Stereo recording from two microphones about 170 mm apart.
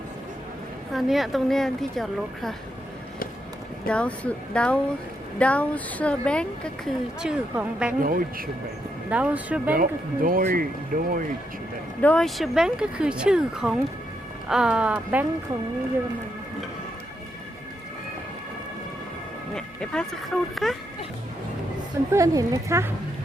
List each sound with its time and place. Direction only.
0.9 s speech: centre (ahead or behind)
3.8 s speech: 5° left (ahead or behind)
8.0 s speech: 55° right (ahead or behind)
9.0 s speech: 5° right (ahead or behind)
9.7 s speech: 55° right (ahead or behind)
12.0 s speech: 5° left (ahead or behind)
19.5 s speech: 5° left (ahead or behind)
22.1 s speech: 20° right (ahead or behind)